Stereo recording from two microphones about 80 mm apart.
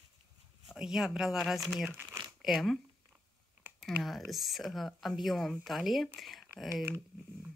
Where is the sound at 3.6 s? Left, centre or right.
Centre.